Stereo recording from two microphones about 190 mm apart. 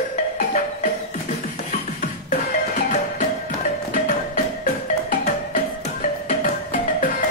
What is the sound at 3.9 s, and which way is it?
Music, 45° left (ahead or behind).